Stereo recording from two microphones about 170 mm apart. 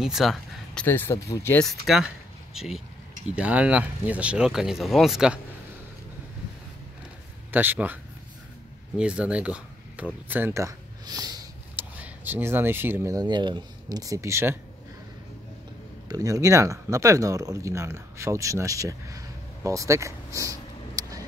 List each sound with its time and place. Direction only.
0.0 s speech: centre (ahead or behind)
0.8 s speech: 15° left (ahead or behind)
1.7 s speech: 5° right (ahead or behind)
7.5 s speech: 10° right (ahead or behind)
11.7 s speech: 10° right (ahead or behind)
16.1 s speech: 20° right (ahead or behind)